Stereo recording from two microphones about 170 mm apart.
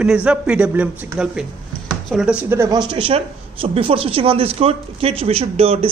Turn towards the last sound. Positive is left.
turn(degrees=-35)  # may be behind; listen again after turning